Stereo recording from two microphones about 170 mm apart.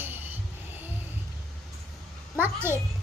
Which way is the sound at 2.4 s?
10° right (ahead or behind).